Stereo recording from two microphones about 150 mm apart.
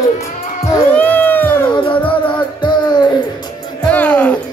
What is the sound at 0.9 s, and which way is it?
Cat, 10° left (ahead or behind).